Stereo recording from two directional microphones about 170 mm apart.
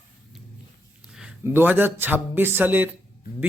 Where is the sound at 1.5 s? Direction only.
10° right (ahead or behind).